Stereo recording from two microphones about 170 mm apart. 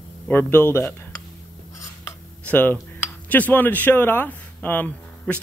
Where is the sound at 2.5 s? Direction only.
10° left (ahead or behind).